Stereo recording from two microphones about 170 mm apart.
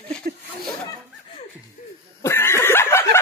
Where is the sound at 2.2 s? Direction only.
15° left (ahead or behind).